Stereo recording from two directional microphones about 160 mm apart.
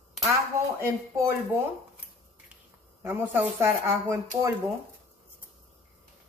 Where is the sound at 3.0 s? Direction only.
15° right (ahead or behind).